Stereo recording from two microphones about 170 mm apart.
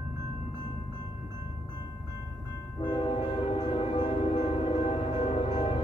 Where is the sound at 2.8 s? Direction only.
30° left (ahead or behind).